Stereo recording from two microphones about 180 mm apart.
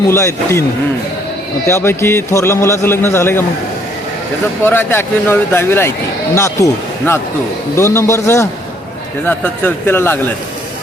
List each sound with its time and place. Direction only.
0.1 s a man's voice: 15° left (ahead or behind)
1.6 s a man's voice: 15° left (ahead or behind)
4.6 s a man's voice: 10° left (ahead or behind)